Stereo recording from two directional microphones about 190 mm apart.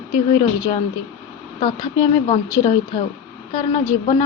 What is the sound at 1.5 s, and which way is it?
Speech, 20° left (ahead or behind).